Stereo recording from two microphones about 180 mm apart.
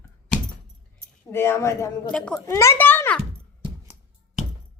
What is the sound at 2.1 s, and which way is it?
Speech, 5° left (ahead or behind).